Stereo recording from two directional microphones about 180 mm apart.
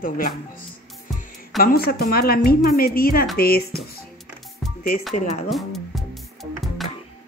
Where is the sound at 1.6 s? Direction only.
55° left (ahead or behind).